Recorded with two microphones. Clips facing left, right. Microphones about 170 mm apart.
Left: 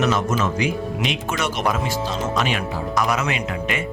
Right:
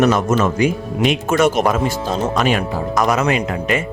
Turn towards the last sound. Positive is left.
turn(degrees=-40)  # may be behind; listen again after turning